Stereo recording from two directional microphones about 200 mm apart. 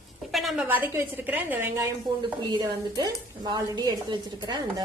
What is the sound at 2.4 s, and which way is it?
Speech, 20° right (ahead or behind).